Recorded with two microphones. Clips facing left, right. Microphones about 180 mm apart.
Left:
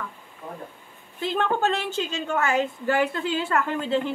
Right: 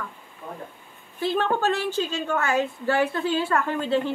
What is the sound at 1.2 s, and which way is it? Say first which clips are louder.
A woman's voice: right 1 dB; 25° left (ahead or behind).